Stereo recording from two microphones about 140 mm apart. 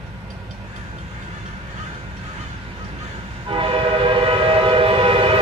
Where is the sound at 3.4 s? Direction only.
40° right (ahead or behind).